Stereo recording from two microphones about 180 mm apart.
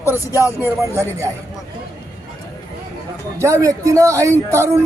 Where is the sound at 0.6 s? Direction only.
15° right (ahead or behind).